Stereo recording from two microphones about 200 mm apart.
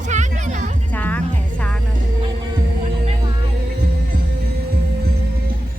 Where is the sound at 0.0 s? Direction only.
35° right (ahead or behind).